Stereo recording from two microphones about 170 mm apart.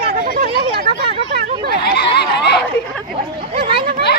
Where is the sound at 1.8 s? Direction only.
70° left (ahead or behind).